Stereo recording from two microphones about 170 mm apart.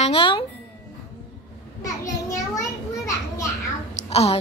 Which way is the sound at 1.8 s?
20° left (ahead or behind).